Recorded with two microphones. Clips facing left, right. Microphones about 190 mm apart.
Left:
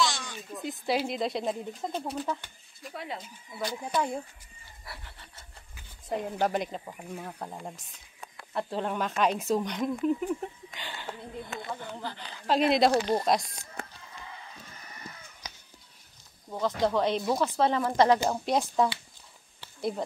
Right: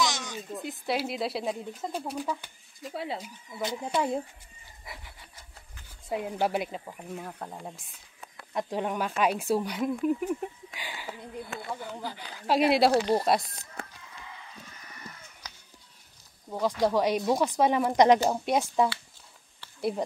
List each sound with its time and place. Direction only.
0.0 s a sound: 20° right (ahead or behind)
0.6 s speech: centre (ahead or behind)
2.8 s speech: 30° right (ahead or behind)
4.8 s speech: 10° right (ahead or behind)
8.5 s speech: 15° right (ahead or behind)
16.4 s speech: 10° right (ahead or behind)
18.4 s speech: 5° right (ahead or behind)